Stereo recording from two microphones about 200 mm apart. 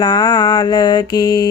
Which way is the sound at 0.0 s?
20° left (ahead or behind).